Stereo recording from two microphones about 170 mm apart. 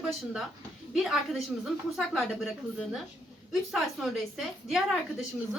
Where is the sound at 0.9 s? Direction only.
Centre (ahead or behind).